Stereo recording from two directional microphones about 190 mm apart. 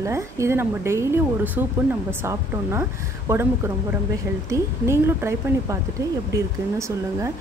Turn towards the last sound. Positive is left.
turn(degrees=-15)  # may be behind; listen again after turning